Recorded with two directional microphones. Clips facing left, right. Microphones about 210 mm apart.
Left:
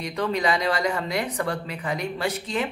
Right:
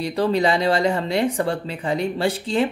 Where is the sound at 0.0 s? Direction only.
30° right (ahead or behind).